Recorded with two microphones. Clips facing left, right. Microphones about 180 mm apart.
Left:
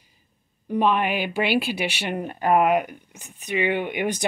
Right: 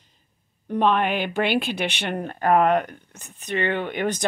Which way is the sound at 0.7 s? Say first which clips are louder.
Right 1 dB; 5° left (ahead or behind).